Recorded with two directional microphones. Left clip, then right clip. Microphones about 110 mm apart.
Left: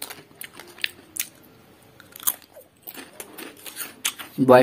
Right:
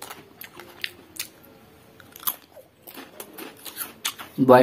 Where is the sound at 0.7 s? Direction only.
10° left (ahead or behind).